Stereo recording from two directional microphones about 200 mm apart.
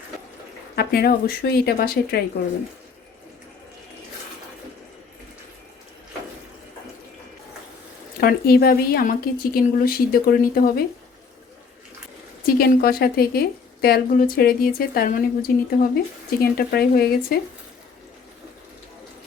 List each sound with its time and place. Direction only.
0.8 s speech: 50° left (ahead or behind)
8.2 s speech: 50° left (ahead or behind)
12.5 s speech: 50° left (ahead or behind)